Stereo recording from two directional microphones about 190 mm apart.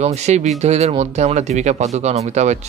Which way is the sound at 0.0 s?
35° right (ahead or behind).